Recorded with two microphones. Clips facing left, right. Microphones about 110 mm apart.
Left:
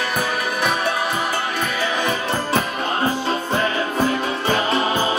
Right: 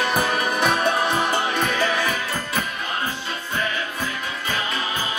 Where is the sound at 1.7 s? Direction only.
20° left (ahead or behind).